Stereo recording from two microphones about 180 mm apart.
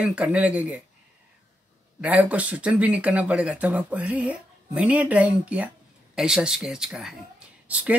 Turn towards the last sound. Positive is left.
turn(degrees=-5)  # may be behind; listen again after turning